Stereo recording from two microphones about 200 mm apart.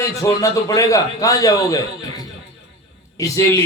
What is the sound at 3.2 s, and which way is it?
Speech, 15° left (ahead or behind).